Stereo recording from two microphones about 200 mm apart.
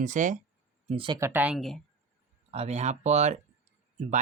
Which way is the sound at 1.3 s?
5° right (ahead or behind).